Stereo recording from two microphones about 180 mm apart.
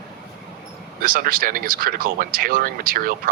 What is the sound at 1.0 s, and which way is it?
Speech, 50° right (ahead or behind).